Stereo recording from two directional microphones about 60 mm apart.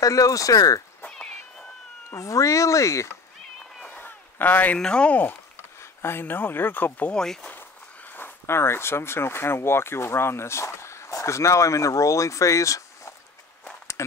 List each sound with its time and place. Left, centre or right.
0.0 s speech: left
1.1 s cat: centre
2.0 s speech: left
3.9 s a sound: left
4.7 s speech: centre
5.8 s speech: left
7.1 s speech: centre
7.5 s a sound: left
8.5 s speech: left